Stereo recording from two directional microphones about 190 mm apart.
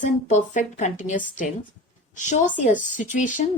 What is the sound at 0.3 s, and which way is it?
A woman's voice, 40° left (ahead or behind).